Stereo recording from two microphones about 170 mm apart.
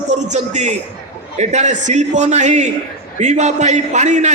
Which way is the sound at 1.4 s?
45° right (ahead or behind).